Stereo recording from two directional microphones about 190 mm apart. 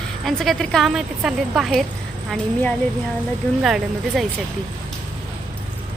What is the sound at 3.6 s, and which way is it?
Speech, centre (ahead or behind).